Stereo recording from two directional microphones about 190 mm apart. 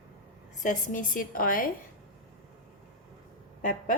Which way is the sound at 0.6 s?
40° left (ahead or behind).